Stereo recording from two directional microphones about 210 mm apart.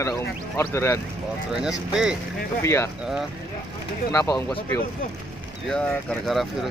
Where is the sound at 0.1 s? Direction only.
10° left (ahead or behind).